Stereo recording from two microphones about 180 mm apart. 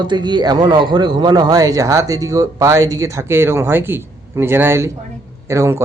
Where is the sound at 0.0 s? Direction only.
25° right (ahead or behind).